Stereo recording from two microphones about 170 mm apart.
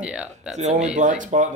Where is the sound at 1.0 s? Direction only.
50° right (ahead or behind).